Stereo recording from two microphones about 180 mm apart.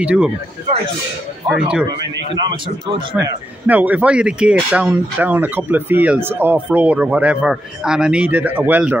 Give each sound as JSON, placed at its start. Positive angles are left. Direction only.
{"t": 0.0, "sound": "speech", "side_deg": -5}
{"t": 1.5, "sound": "speech", "side_deg": -5}
{"t": 2.5, "sound": "a man's voice", "side_deg": -30}
{"t": 3.2, "sound": "speech", "side_deg": -10}